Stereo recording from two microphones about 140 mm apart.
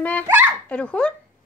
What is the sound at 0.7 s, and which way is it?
Speech, 10° left (ahead or behind).